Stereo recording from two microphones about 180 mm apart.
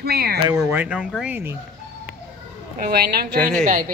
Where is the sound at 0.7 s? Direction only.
10° right (ahead or behind).